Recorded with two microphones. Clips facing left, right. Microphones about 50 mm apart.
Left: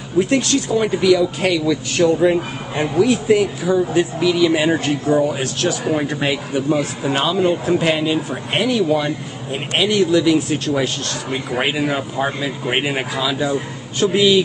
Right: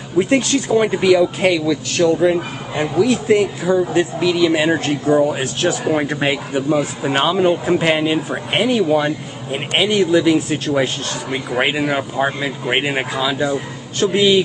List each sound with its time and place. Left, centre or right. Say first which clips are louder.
0.2 s speech: right 1 dB; centre
0.7 s speech: right 2 dB; right
2.0 s speech: even; centre
3.3 s speech: right 1 dB; centre
5.0 s speech: right 4 dB; centre